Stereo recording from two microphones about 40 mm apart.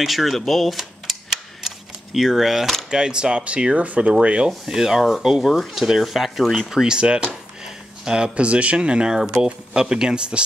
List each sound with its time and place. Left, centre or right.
0.0 s tick-tock: centre
2.1 s speech: centre
2.9 s speech: right
4.0 s speech: right
4.6 s speech: centre
6.7 s speech: centre
7.6 s a sound: centre
8.4 s speech: right